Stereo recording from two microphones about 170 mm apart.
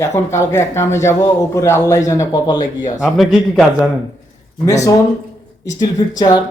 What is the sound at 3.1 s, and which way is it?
Speech, centre (ahead or behind).